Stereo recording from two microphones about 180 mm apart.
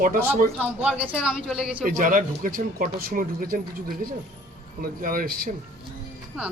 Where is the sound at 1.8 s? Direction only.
50° right (ahead or behind).